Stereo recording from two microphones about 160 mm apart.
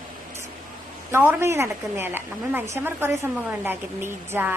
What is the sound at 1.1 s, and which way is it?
A woman's voice, 15° right (ahead or behind).